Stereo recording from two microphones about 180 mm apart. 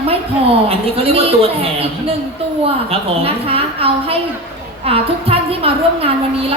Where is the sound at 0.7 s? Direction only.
30° right (ahead or behind).